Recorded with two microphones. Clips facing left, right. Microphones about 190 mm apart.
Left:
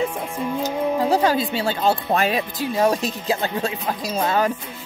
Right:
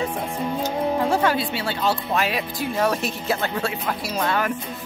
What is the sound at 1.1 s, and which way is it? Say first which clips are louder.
A woman's voice: left 2 dB; 40° left (ahead or behind).